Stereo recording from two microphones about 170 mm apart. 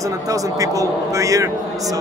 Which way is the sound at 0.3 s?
20° right (ahead or behind).